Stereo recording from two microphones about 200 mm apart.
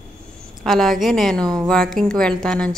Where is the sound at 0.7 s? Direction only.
Centre (ahead or behind).